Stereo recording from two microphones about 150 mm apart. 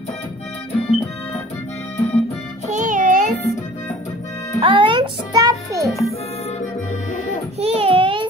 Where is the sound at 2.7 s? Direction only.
55° right (ahead or behind).